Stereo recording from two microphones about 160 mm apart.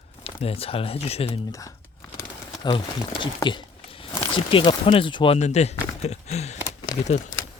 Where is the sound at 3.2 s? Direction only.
30° left (ahead or behind).